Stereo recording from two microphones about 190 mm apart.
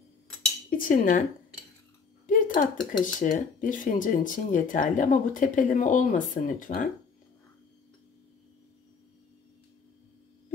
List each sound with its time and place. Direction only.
0.7 s speech: 45° left (ahead or behind)
2.2 s dishes: 45° left (ahead or behind)
3.0 s speech: 45° left (ahead or behind)